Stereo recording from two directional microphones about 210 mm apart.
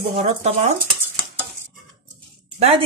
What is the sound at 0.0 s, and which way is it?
Speech, 35° right (ahead or behind).